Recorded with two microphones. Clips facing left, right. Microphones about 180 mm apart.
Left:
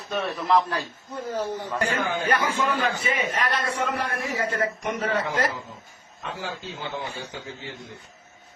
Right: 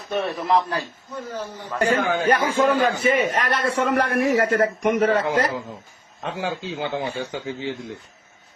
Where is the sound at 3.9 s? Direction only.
65° right (ahead or behind).